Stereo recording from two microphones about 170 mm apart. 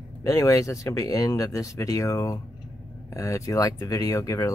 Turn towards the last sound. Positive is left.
turn(degrees=20)  # may be behind; listen again after turning